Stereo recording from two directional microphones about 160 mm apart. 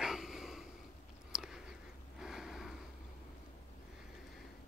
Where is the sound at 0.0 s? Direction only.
5° right (ahead or behind).